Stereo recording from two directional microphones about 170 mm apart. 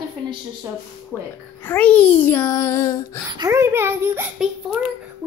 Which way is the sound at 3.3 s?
20° right (ahead or behind).